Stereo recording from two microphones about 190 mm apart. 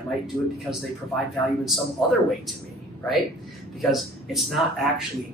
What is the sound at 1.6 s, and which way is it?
Speech, centre (ahead or behind).